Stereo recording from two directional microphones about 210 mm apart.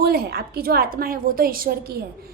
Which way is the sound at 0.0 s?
45° right (ahead or behind).